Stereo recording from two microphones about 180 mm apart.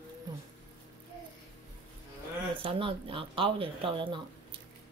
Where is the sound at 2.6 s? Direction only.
30° right (ahead or behind).